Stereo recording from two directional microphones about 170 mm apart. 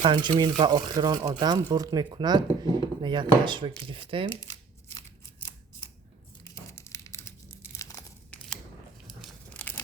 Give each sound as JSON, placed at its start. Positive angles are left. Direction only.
{"t": 0.0, "sound": "speech", "side_deg": -25}
{"t": 6.4, "sound": "crumpling", "side_deg": 20}
{"t": 7.8, "sound": "tearing", "side_deg": 20}
{"t": 9.0, "sound": "a sound", "side_deg": 5}